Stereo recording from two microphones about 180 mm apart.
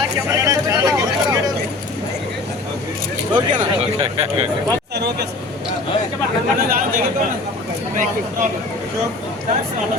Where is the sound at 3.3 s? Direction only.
30° right (ahead or behind).